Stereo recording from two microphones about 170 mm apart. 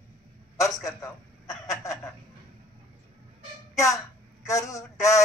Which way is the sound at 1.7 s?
15° left (ahead or behind).